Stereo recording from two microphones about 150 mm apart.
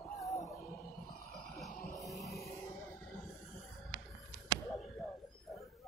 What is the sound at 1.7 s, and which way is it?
Music, 65° left (ahead or behind).